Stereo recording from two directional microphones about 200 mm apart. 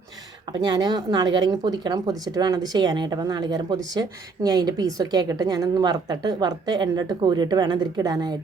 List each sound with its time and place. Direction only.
0.6 s a woman's voice: 20° right (ahead or behind)